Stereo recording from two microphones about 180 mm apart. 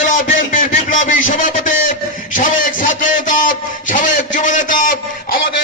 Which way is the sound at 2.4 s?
45° left (ahead or behind).